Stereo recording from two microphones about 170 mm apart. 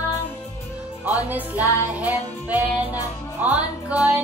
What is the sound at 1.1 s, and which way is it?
Music, 10° right (ahead or behind).